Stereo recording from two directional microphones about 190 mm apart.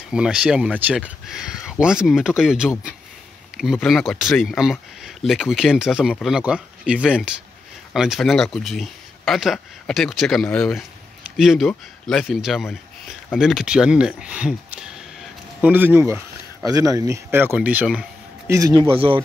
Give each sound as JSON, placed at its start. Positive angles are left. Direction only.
{"t": 0.1, "sound": "speech", "side_deg": -5}
{"t": 18.5, "sound": "a man's voice", "side_deg": -20}